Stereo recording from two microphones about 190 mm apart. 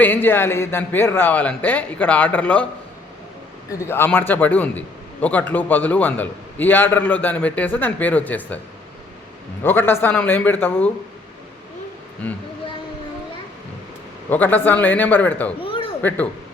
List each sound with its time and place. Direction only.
0.0 s a man's voice: 10° left (ahead or behind)
3.7 s a man's voice: 15° left (ahead or behind)
9.6 s a man's voice: 10° left (ahead or behind)
14.3 s a man's voice: 10° left (ahead or behind)
15.6 s a sound: 30° left (ahead or behind)
16.0 s speech: 10° left (ahead or behind)